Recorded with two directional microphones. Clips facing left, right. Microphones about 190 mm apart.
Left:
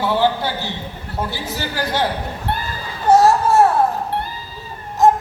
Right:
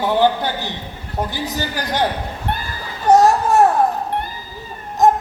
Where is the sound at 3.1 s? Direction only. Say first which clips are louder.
Even; 15° right (ahead or behind).